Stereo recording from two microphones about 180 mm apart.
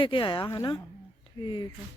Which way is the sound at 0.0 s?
30° left (ahead or behind).